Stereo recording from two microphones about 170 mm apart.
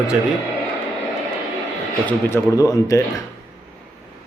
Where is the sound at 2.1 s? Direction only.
15° left (ahead or behind).